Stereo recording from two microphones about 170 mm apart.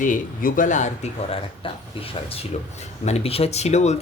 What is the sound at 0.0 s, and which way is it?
Speech, 50° left (ahead or behind).